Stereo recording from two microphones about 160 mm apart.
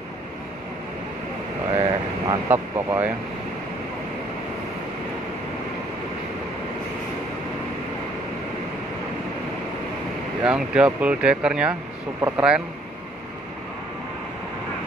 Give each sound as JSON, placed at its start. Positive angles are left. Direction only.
{"t": 1.7, "sound": "vehicle", "side_deg": -30}
{"t": 2.5, "sound": "speech", "side_deg": -15}
{"t": 10.4, "sound": "speech", "side_deg": -5}